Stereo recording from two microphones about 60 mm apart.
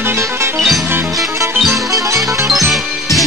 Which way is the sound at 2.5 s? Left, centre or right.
Centre.